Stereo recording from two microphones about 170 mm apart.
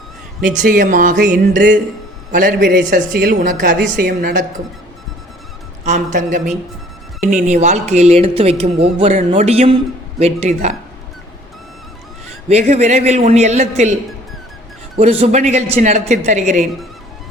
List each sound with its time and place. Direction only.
0.5 s a woman's voice: 55° right (ahead or behind)
5.8 s speech: 45° right (ahead or behind)
7.4 s speech: 45° right (ahead or behind)
12.5 s speech: 40° right (ahead or behind)
14.9 s speech: 40° right (ahead or behind)